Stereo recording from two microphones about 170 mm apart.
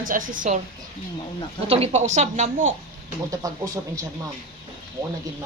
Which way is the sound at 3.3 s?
20° right (ahead or behind).